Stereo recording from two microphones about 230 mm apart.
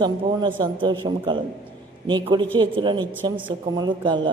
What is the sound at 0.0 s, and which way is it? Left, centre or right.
Speech, centre.